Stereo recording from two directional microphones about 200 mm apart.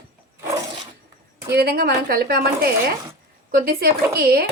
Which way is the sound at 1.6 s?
50° right (ahead or behind).